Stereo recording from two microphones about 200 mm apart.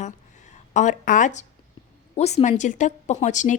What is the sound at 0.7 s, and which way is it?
A woman's voice, 40° left (ahead or behind).